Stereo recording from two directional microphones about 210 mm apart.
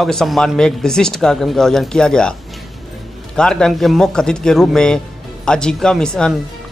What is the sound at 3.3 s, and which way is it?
Speech, 5° left (ahead or behind).